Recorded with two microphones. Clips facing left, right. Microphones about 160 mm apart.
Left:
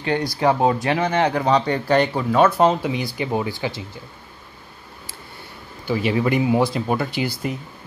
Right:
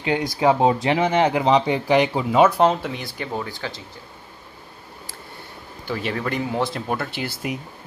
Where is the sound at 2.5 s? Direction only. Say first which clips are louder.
Left 1 dB; centre (ahead or behind).